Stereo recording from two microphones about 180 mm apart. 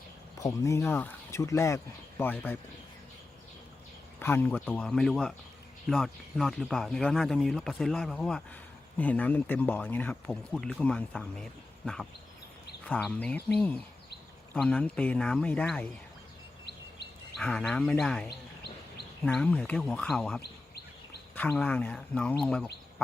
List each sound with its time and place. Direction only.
0.3 s speech: 20° left (ahead or behind)
4.2 s speech: 10° left (ahead or behind)
13.1 s speech: 10° left (ahead or behind)
17.3 s speech: 5° left (ahead or behind)
18.3 s bird: 65° left (ahead or behind)
19.2 s speech: 5° left (ahead or behind)
20.4 s bird vocalization: 65° left (ahead or behind)
21.3 s speech: 10° left (ahead or behind)